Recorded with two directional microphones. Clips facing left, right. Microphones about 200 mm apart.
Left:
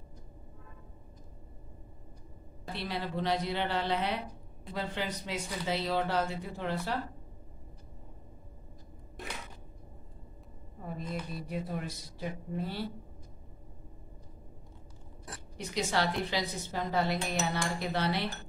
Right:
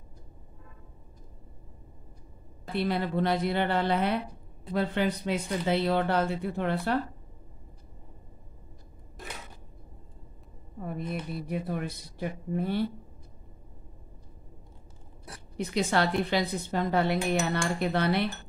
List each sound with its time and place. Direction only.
2.7 s a woman's voice: 55° right (ahead or behind)
11.4 s speech: 60° right (ahead or behind)
15.5 s speech: 60° right (ahead or behind)